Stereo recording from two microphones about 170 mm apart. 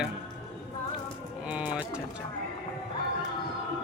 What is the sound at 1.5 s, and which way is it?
Bird, 5° right (ahead or behind).